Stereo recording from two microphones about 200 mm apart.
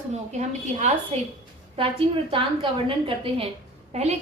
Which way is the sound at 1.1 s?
30° right (ahead or behind).